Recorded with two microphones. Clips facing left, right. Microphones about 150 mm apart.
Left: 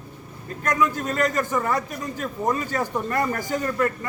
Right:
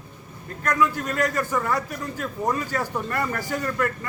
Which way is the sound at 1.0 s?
20° left (ahead or behind).